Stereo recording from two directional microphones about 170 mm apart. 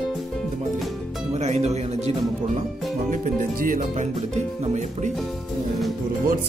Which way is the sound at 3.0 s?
50° right (ahead or behind).